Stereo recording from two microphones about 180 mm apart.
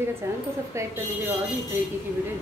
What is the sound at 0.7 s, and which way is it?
A woman's voice, 15° right (ahead or behind).